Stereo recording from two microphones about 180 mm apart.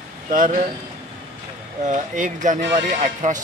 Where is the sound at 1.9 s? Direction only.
45° right (ahead or behind).